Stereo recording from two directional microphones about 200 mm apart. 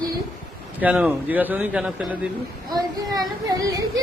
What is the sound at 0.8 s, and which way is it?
Speech, 5° right (ahead or behind).